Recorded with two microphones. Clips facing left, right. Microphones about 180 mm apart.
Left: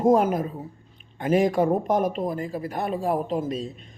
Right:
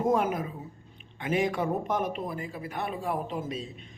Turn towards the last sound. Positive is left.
turn(degrees=40)  # may be behind; listen again after turning